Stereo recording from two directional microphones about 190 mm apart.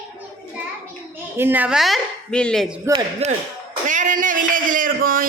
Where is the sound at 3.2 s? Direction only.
35° right (ahead or behind).